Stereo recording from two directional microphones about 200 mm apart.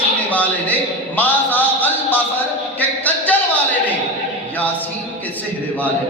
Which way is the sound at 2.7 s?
10° left (ahead or behind).